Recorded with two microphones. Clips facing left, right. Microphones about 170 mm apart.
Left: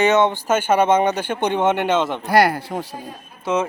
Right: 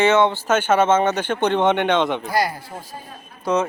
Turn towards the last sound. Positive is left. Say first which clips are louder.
# right 1 dB
turn(degrees=5)  # may be behind; listen again after turning